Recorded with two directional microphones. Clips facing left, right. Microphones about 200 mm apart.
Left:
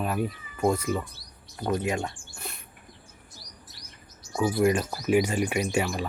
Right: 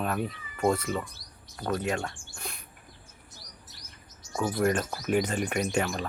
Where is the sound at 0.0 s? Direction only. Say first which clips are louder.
Left 2 dB; 5° left (ahead or behind).